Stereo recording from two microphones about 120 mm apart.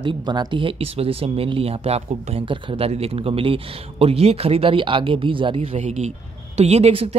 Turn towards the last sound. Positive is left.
turn(degrees=-60)  # may be behind; listen again after turning